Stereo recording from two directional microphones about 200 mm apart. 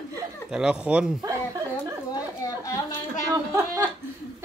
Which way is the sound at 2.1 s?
15° left (ahead or behind).